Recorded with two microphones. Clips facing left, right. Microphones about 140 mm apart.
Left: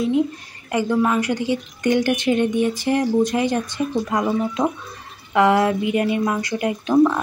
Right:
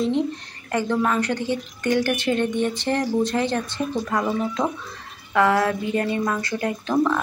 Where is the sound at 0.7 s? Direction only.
10° left (ahead or behind).